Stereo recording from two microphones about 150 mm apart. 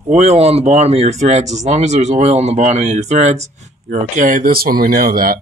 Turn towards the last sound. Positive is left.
turn(degrees=-75)  # may be behind; listen again after turning